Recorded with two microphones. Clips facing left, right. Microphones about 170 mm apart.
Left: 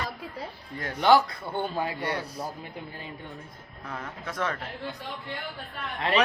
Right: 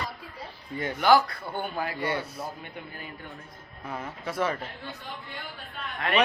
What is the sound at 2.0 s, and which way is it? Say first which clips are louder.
Speech: right 1 dB; centre (ahead or behind).